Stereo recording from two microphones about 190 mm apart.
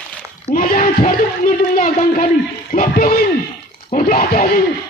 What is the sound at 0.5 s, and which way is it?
Speech, 45° left (ahead or behind).